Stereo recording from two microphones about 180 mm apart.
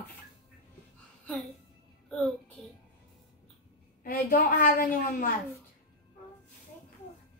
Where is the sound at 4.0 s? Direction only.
55° left (ahead or behind).